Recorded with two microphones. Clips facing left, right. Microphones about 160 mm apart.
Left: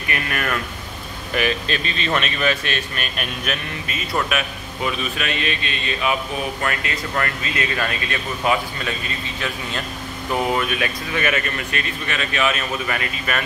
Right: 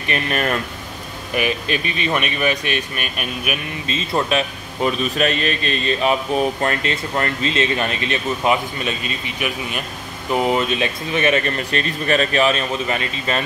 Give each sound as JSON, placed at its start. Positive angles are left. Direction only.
{"t": 0.1, "sound": "speech", "side_deg": -30}
{"t": 1.3, "sound": "speech", "side_deg": -15}
{"t": 3.8, "sound": "a man's voice", "side_deg": -25}